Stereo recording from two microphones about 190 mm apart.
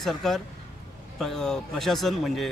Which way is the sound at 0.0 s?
Centre (ahead or behind).